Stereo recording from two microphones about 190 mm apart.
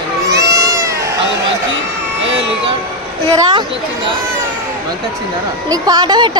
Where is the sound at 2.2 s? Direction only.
75° right (ahead or behind).